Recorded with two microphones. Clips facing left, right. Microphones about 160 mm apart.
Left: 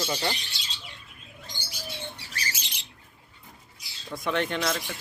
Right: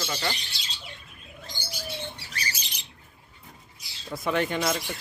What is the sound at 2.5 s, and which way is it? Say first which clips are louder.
Squawk: even; 90° left.